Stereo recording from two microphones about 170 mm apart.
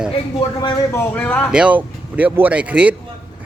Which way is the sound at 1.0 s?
10° left (ahead or behind).